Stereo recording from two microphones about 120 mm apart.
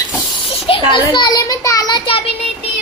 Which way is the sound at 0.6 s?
45° left (ahead or behind).